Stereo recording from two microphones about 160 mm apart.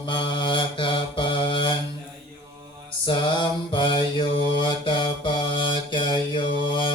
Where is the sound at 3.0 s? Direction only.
30° left (ahead or behind).